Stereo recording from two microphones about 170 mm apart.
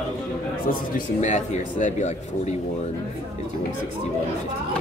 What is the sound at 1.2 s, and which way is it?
Speech, 45° left (ahead or behind).